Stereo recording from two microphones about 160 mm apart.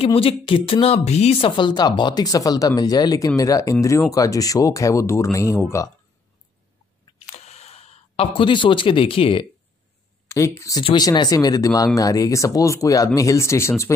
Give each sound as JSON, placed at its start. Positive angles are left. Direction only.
{"t": 0.0, "sound": "speech", "side_deg": 35}
{"t": 7.2, "sound": "a sound", "side_deg": 40}
{"t": 10.2, "sound": "speech", "side_deg": 20}
{"t": 10.8, "sound": "speech", "side_deg": 30}